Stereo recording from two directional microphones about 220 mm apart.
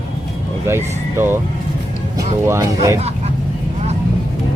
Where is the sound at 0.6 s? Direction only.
10° right (ahead or behind).